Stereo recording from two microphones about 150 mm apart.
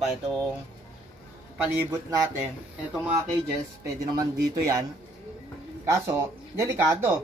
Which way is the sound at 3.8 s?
25° right (ahead or behind).